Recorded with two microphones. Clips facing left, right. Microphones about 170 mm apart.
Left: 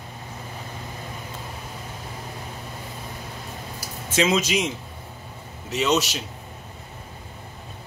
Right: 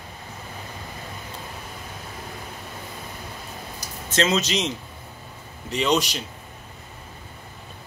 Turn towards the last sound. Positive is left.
turn(degrees=5)  # may be behind; listen again after turning